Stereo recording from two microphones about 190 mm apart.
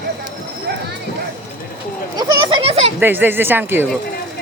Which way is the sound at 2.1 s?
25° right (ahead or behind).